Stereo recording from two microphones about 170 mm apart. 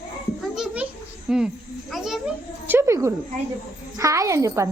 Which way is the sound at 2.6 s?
15° right (ahead or behind).